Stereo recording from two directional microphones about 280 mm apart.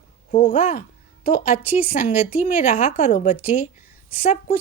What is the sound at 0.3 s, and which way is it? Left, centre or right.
A woman's voice, left.